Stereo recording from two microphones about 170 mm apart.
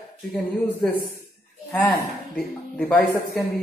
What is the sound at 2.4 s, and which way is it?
A man's voice, 10° left (ahead or behind).